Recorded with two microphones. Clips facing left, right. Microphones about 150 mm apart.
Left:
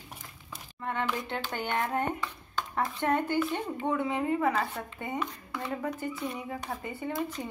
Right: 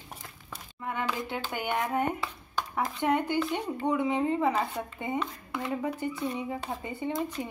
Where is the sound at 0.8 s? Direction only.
10° right (ahead or behind).